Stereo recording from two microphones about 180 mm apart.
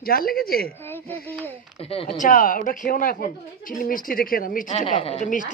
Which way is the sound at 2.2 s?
45° left (ahead or behind).